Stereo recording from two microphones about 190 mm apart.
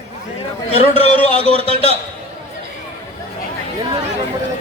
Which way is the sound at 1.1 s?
30° right (ahead or behind).